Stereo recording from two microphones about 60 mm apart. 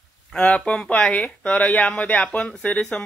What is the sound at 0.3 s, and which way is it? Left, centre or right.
Speech, centre.